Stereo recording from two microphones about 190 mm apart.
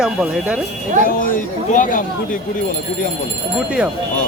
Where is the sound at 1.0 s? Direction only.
45° left (ahead or behind).